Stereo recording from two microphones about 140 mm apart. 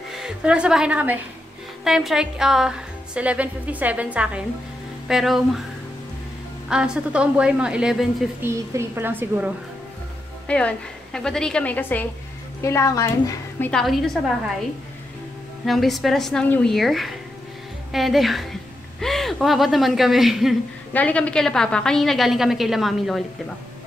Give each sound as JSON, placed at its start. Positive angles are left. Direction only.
{"t": 0.1, "sound": "a woman's voice", "side_deg": -5}
{"t": 6.7, "sound": "a woman's voice", "side_deg": -5}
{"t": 8.4, "sound": "a woman's voice", "side_deg": -20}
{"t": 10.5, "sound": "a woman's voice", "side_deg": 10}
{"t": 13.7, "sound": "a woman's voice", "side_deg": 0}
{"t": 15.6, "sound": "a woman's voice", "side_deg": 0}
{"t": 16.7, "sound": "a woman's voice", "side_deg": 0}
{"t": 20.9, "sound": "a woman's voice", "side_deg": 10}